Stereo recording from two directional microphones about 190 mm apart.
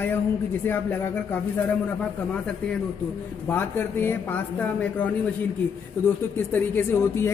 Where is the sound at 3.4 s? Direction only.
10° left (ahead or behind).